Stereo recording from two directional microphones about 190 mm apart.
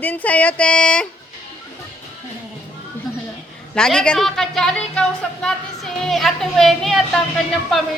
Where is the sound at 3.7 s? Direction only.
5° left (ahead or behind).